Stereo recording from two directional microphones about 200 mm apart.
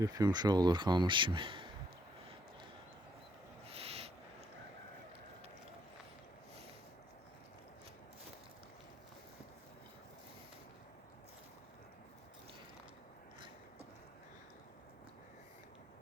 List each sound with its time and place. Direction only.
0.0 s speech: 20° right (ahead or behind)
3.7 s owl: 30° right (ahead or behind)